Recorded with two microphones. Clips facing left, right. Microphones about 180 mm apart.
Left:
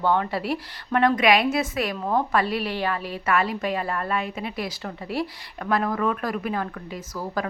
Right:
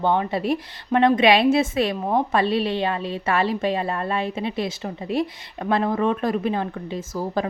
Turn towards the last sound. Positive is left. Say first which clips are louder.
# right 4 dB
turn(degrees=-25)  # may be behind; listen again after turning